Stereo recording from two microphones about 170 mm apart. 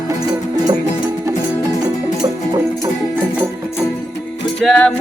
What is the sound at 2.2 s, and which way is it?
Music, 20° right (ahead or behind).